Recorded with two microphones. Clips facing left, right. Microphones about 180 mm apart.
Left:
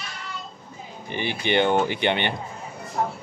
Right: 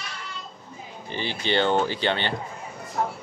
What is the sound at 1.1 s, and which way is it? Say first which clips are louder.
Speech: left 2 dB; 15° left (ahead or behind).